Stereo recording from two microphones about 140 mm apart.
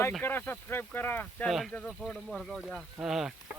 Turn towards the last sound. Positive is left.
turn(degrees=-5)  # may be behind; listen again after turning